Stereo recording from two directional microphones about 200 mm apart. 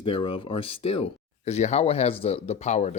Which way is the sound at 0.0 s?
25° left (ahead or behind).